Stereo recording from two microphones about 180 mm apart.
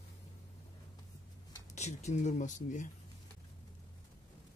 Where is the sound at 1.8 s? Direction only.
40° left (ahead or behind).